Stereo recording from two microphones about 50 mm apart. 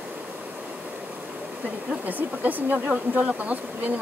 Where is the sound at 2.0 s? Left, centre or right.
Right.